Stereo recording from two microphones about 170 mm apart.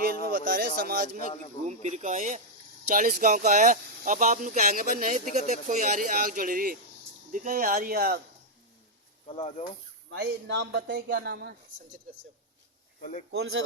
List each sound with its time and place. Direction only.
0.0 s a sound: 60° right (ahead or behind)
0.8 s speech: 60° right (ahead or behind)
1.6 s speech: 40° right (ahead or behind); by 8.2 s 60° right (ahead or behind)
9.4 s speech: 40° left (ahead or behind)
10.2 s speech: 90° right; by 11.5 s 70° right (ahead or behind)
13.0 s speech: 45° left (ahead or behind)